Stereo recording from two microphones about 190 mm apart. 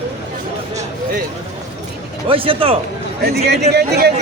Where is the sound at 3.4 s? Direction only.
60° right (ahead or behind).